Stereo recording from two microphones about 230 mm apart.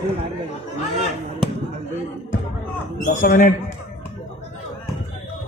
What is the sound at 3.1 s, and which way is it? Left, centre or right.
Speech, left.